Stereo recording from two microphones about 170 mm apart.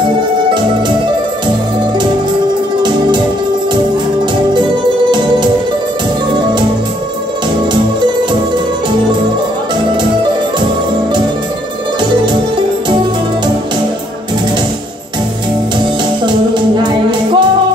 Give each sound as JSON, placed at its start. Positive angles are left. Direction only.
{"t": 16.5, "sound": "music", "side_deg": -25}